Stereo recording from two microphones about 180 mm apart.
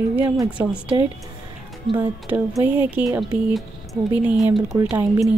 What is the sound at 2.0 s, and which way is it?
Speech, 10° right (ahead or behind).